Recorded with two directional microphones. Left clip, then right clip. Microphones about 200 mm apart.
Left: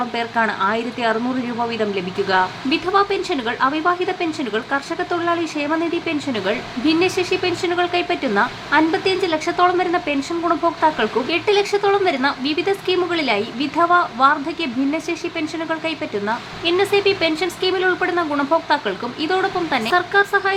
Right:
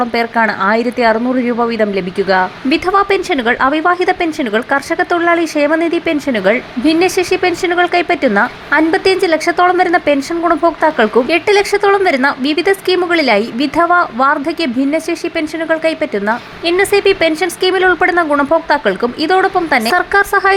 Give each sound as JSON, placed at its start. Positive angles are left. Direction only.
{"t": 0.1, "sound": "a woman's voice", "side_deg": -25}